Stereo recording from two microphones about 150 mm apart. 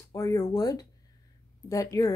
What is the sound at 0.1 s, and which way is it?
Speech, 20° left (ahead or behind).